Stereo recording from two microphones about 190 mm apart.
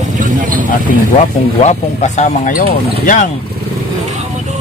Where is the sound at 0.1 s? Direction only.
45° right (ahead or behind).